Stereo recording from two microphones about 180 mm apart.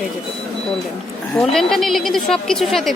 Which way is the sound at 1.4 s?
Centre (ahead or behind).